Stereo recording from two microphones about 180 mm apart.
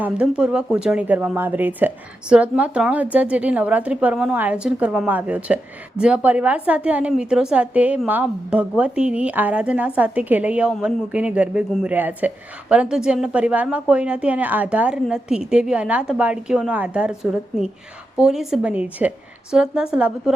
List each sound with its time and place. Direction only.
0.0 s a woman's voice: 5° right (ahead or behind)